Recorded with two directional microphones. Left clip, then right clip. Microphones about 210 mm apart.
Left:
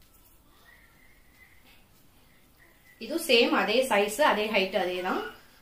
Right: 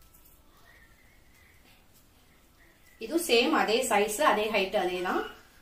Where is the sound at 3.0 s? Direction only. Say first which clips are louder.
Left 2 dB; 20° left (ahead or behind).